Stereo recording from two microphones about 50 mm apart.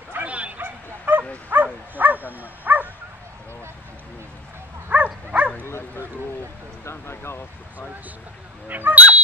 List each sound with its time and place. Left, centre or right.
0.1 s bow-wow: right
0.6 s bow-wow: right
1.5 s dog: right
4.8 s dog: right
5.7 s bow-wow: left
6.8 s speech: left
8.6 s speech: right